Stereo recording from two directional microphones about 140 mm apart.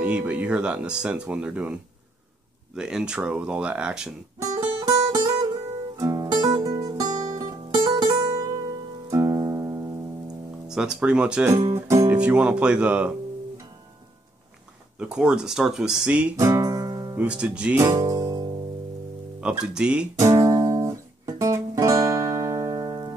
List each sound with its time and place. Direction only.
0.0 s speech: 10° right (ahead or behind)
4.6 s music: 25° right (ahead or behind)
10.7 s speech: 5° right (ahead or behind)
11.7 s speech: 20° right (ahead or behind)
12.2 s speech: 10° right (ahead or behind)
15.0 s speech: 5° right (ahead or behind)
16.3 s music: 20° right (ahead or behind)
17.2 s speech: 5° right (ahead or behind)
17.8 s music: 25° right (ahead or behind)
19.4 s speech: 5° right (ahead or behind)
20.2 s music: 25° right (ahead or behind)